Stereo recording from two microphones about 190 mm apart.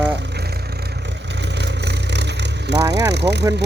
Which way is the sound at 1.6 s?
65° right (ahead or behind).